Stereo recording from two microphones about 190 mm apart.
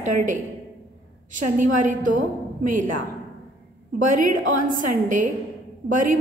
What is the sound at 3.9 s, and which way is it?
A woman's voice, 45° right (ahead or behind).